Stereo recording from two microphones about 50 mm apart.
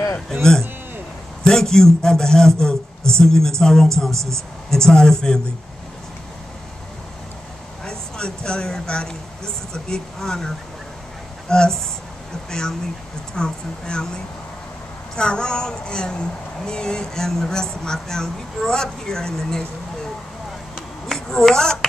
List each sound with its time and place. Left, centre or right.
0.4 s a woman's voice: centre
4.1 s speech: right
4.6 s a woman's voice: centre
7.8 s a woman's voice: centre
21.1 s speech: centre